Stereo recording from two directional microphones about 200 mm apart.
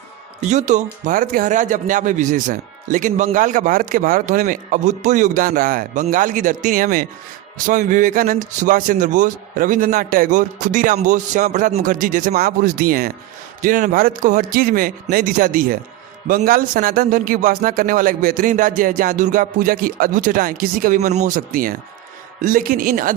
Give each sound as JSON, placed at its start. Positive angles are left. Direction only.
{"t": 0.5, "sound": "speech", "side_deg": -35}